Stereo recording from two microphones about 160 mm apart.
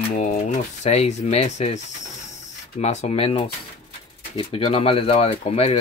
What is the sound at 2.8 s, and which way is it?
Speech, 45° left (ahead or behind).